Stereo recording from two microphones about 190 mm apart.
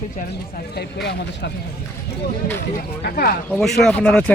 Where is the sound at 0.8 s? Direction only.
60° left (ahead or behind).